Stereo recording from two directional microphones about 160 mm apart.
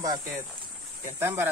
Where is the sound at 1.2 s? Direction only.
15° right (ahead or behind).